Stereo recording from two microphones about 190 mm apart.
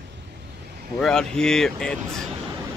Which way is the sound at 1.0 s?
5° left (ahead or behind).